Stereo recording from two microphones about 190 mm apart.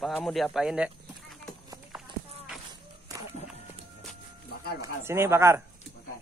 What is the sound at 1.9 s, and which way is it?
Run, 5° right (ahead or behind).